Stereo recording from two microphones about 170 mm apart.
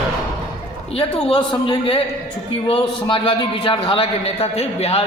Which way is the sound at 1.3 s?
30° left (ahead or behind).